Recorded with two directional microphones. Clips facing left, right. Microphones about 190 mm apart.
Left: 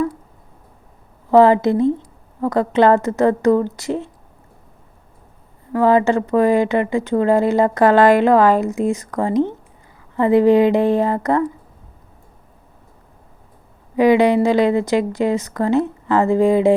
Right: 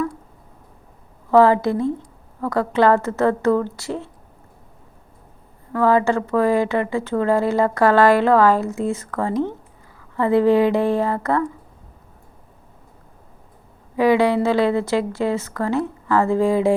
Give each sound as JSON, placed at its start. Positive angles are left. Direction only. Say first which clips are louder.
{"t": 1.3, "sound": "a woman's voice", "louder": "left 3 dB", "side_deg": 20}
{"t": 5.7, "sound": "a woman's voice", "louder": "left 3 dB", "side_deg": 20}
{"t": 13.9, "sound": "a woman's voice", "louder": "left 3 dB", "side_deg": 20}